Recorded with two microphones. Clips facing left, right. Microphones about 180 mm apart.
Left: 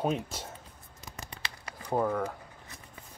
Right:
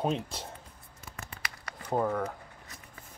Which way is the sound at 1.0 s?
15° left (ahead or behind).